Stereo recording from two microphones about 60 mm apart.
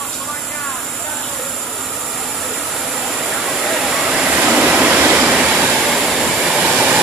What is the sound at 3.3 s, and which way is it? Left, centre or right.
Vehicle, centre.